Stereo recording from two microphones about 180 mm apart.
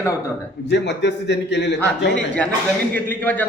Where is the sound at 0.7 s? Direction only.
75° left (ahead or behind).